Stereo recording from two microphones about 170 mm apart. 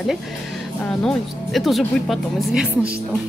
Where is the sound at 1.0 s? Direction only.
Centre (ahead or behind).